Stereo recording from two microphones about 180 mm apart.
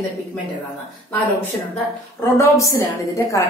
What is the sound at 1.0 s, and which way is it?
A woman's voice, 10° left (ahead or behind).